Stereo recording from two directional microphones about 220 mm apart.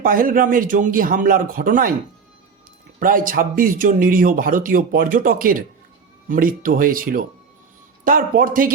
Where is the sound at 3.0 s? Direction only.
40° right (ahead or behind).